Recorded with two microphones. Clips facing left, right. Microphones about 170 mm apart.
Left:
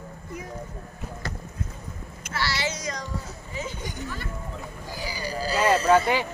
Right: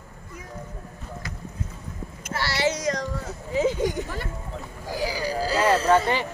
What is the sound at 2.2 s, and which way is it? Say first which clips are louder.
Child singing: right 4 dB; 60° right (ahead or behind).